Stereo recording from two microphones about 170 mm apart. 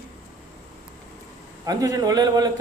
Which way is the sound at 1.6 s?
20° right (ahead or behind).